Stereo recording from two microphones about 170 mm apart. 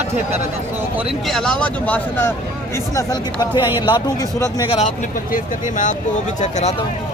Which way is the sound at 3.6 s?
10° right (ahead or behind).